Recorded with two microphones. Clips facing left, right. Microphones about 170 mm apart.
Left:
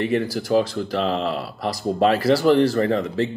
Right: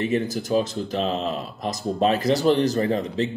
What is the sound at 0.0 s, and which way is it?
Speech, 20° right (ahead or behind).